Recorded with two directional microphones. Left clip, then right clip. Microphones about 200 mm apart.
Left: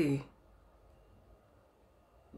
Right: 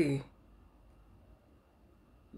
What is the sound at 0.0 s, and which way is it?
Speech, centre (ahead or behind).